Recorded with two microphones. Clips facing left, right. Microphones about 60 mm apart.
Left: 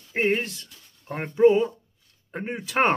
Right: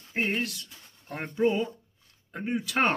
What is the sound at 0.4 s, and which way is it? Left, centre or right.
Speech, left.